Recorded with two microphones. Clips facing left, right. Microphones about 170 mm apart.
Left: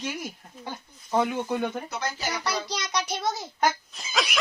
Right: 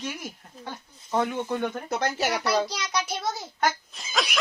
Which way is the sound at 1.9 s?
65° right (ahead or behind).